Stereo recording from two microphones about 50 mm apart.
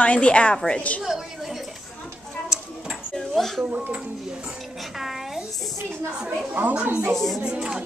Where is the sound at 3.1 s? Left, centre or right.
Centre.